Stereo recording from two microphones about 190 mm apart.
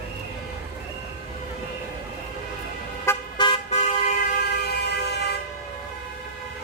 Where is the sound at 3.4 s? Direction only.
25° left (ahead or behind).